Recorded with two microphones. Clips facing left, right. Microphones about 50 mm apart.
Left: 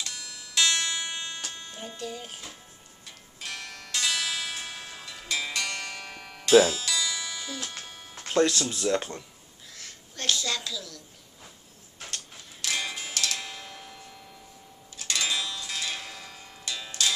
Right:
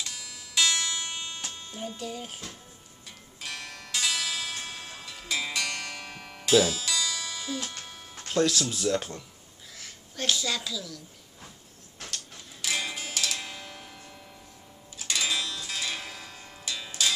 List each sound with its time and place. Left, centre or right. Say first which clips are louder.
0.0 s music: left 1 dB; centre
2.0 s a child's voice: even; centre
3.3 s music: even; centre
7.7 s music: left 1 dB; centre
8.3 s speech: left 2 dB; centre
9.8 s a sound: right 3 dB; centre
12.6 s music: even; centre
15.0 s zither: even; centre